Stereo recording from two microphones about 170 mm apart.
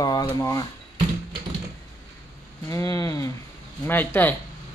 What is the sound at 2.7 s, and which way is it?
Speech, 20° left (ahead or behind).